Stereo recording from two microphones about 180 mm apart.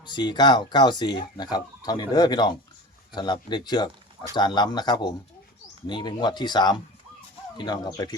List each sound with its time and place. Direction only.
0.0 s speech: 25° left (ahead or behind)